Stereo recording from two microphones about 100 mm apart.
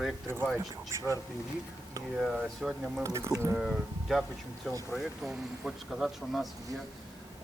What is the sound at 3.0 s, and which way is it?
Speech, 30° right (ahead or behind).